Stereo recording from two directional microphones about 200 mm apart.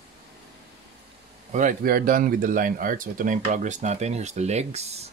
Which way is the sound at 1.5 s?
45° right (ahead or behind).